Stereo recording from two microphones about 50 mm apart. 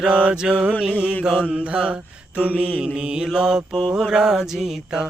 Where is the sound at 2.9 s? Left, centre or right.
Centre.